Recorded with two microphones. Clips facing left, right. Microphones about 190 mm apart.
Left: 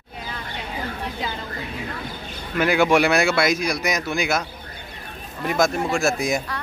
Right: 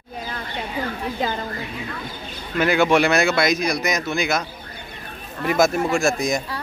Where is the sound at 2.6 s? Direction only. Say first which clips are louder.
Even; 10° left (ahead or behind).